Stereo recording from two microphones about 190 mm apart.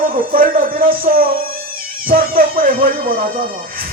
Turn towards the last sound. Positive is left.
turn(degrees=-50)  # may be behind; listen again after turning